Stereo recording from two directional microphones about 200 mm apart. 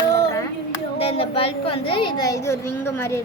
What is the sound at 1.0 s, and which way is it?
Speech, 30° left (ahead or behind).